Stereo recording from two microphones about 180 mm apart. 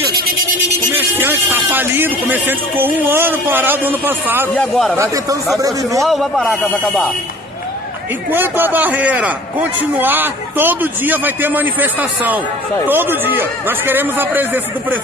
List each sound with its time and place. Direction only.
0.9 s a man's voice: 10° right (ahead or behind)
4.6 s speech: centre (ahead or behind)
4.9 s a man's voice: 15° right (ahead or behind)
6.0 s speech: centre (ahead or behind)
8.3 s a man's voice: 10° right (ahead or behind)